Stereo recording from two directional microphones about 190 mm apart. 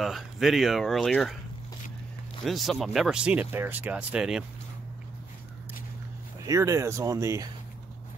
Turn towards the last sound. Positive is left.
turn(degrees=-15)  # may be behind; listen again after turning